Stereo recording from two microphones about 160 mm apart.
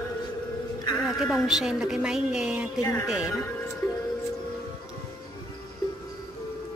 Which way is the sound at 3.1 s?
5° right (ahead or behind).